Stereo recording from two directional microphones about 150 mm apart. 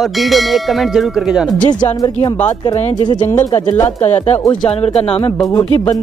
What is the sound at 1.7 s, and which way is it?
Speech, 30° left (ahead or behind).